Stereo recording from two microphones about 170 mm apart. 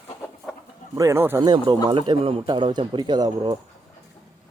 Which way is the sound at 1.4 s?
25° right (ahead or behind).